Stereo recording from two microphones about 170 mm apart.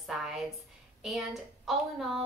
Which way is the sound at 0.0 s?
Centre (ahead or behind).